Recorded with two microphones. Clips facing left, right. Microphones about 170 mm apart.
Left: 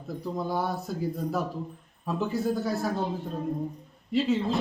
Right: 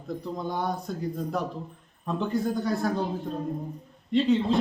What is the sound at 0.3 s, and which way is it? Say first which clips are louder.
Speech: left 2 dB; 5° left (ahead or behind).